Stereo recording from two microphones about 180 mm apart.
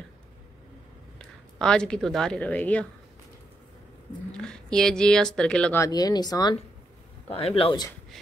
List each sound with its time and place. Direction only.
1.1 s a woman's voice: 5° left (ahead or behind)
4.3 s speech: 5° left (ahead or behind)
5.8 s speech: 20° left (ahead or behind)
7.2 s speech: 30° left (ahead or behind)